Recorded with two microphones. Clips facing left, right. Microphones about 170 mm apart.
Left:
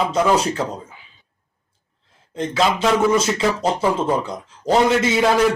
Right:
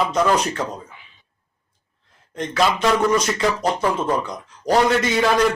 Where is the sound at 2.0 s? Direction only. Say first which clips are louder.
Left 3 dB; 30° left (ahead or behind).